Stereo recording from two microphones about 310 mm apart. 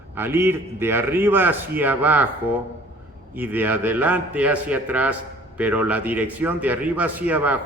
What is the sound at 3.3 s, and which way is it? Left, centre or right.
A man's voice, centre.